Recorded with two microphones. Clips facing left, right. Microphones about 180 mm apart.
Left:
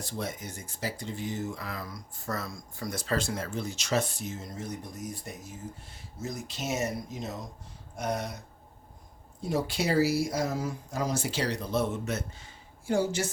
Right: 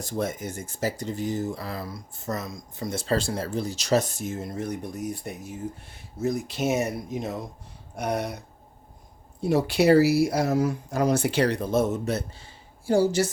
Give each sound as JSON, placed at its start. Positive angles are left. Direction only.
{"t": 0.0, "sound": "speech", "side_deg": -45}
{"t": 9.4, "sound": "speech", "side_deg": -65}